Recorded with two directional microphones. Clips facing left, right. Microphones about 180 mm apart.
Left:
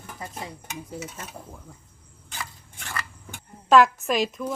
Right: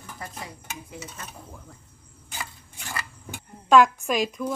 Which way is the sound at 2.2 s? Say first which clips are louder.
Even; 10° right (ahead or behind).